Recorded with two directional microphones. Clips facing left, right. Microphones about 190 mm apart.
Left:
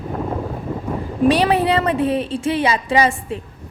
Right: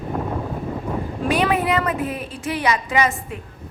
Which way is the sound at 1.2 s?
35° left (ahead or behind).